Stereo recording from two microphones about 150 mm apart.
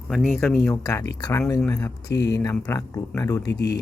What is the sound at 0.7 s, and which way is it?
Speech, 20° left (ahead or behind).